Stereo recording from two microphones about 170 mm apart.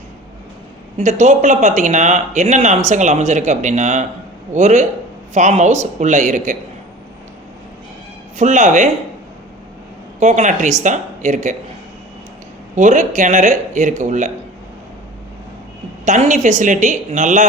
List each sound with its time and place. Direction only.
0.9 s speech: 45° right (ahead or behind)
8.4 s speech: 45° right (ahead or behind)
10.2 s speech: 45° right (ahead or behind)
12.7 s speech: 45° right (ahead or behind)
16.0 s speech: 45° right (ahead or behind)